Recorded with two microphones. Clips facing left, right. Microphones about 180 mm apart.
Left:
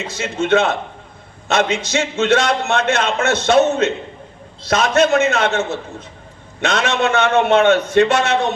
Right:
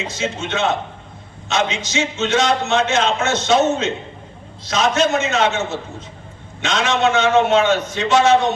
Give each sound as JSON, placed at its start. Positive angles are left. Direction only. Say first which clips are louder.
{"t": 0.1, "sound": "a man's voice", "louder": "left 12 dB", "side_deg": 55}